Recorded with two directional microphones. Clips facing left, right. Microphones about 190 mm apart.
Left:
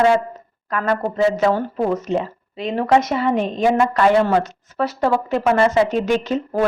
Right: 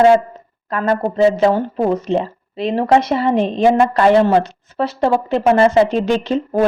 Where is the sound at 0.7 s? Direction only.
30° right (ahead or behind).